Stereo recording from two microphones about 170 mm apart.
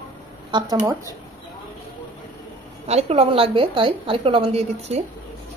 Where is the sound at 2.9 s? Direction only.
40° right (ahead or behind).